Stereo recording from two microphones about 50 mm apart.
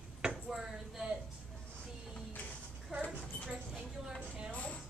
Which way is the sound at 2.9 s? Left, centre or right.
Right.